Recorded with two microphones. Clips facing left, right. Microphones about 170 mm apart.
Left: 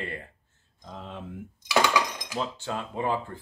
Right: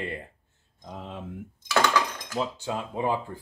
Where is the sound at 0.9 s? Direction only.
5° right (ahead or behind).